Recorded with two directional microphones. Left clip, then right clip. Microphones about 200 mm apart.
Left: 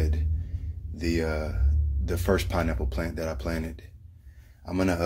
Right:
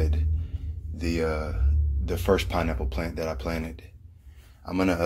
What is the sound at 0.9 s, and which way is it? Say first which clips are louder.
Speech: right 1 dB; 20° left (ahead or behind).